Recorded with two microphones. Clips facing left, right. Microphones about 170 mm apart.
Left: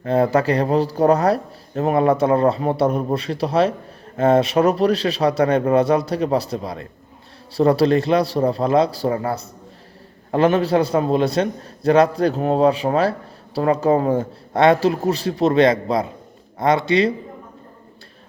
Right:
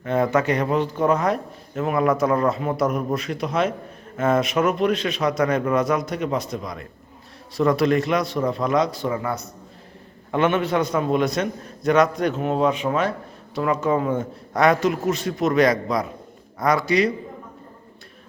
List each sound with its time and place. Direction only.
0.0 s a man's voice: 35° left (ahead or behind)